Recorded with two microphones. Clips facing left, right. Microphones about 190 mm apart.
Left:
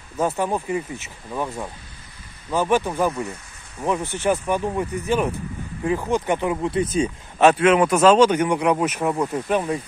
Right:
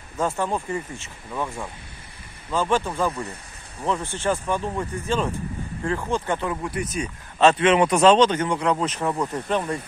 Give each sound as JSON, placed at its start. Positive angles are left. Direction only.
{"t": 0.2, "sound": "speech", "side_deg": 15}
{"t": 7.5, "sound": "speech", "side_deg": 5}